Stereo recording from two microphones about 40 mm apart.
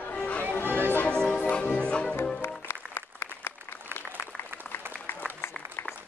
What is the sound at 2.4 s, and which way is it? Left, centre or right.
Music, left.